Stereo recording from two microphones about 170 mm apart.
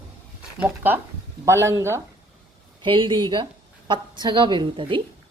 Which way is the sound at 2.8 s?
30° right (ahead or behind).